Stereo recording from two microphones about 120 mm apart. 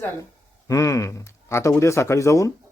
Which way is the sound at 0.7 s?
25° left (ahead or behind).